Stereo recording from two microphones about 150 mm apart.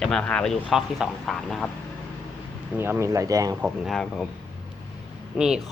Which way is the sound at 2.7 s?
15° right (ahead or behind).